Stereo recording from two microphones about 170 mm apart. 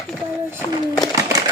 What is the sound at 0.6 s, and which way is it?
Speech, 20° left (ahead or behind).